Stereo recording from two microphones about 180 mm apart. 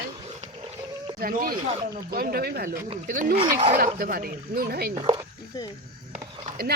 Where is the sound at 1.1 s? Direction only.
55° right (ahead or behind).